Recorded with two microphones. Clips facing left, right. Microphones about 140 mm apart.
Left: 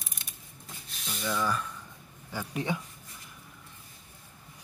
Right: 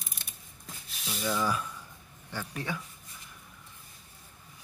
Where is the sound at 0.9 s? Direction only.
5° right (ahead or behind).